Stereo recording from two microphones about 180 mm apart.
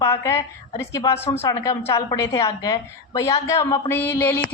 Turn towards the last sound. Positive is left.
turn(degrees=10)  # may be behind; listen again after turning